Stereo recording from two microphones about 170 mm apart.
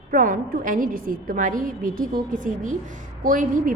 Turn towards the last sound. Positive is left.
turn(degrees=-55)  # may be behind; listen again after turning